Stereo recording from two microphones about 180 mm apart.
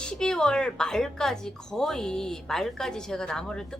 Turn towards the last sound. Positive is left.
turn(degrees=5)  # may be behind; listen again after turning